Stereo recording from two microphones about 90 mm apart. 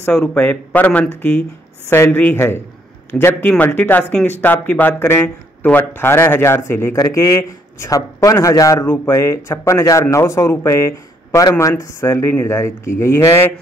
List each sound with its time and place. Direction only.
0.1 s speech: 10° left (ahead or behind)
0.4 s speech: 20° left (ahead or behind)
3.4 s a man's voice: 15° left (ahead or behind); by 8.8 s 40° left (ahead or behind)
8.8 s a man's voice: 25° left (ahead or behind)